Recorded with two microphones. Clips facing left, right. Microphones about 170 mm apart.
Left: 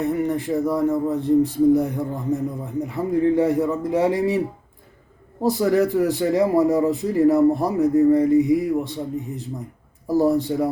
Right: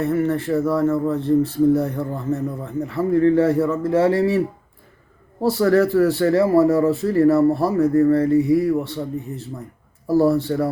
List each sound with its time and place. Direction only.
0.0 s speech: 15° left (ahead or behind)